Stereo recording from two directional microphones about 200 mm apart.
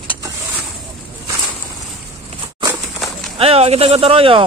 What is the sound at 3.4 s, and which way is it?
Speech, 30° right (ahead or behind).